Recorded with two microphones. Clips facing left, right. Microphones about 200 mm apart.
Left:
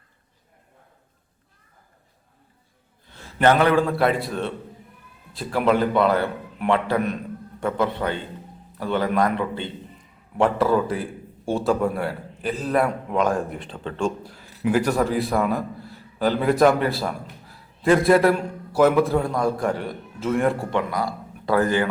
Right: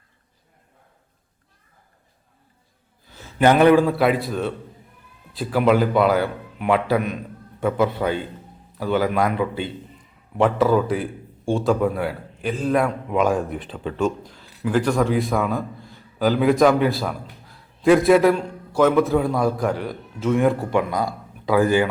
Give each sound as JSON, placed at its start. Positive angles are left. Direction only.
{"t": 3.1, "sound": "a sound", "side_deg": 0}
{"t": 3.4, "sound": "a man's voice", "side_deg": -15}
{"t": 3.9, "sound": "a man's voice", "side_deg": 0}
{"t": 14.2, "sound": "a man's voice", "side_deg": 10}
{"t": 20.7, "sound": "speech", "side_deg": -20}
{"t": 21.4, "sound": "a man's voice", "side_deg": -5}